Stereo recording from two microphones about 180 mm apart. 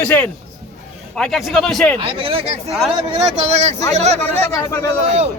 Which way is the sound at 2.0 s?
30° right (ahead or behind).